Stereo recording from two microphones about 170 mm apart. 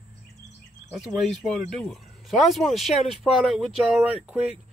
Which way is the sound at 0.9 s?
Centre (ahead or behind).